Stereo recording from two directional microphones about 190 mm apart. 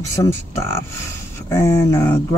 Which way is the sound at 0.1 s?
15° left (ahead or behind).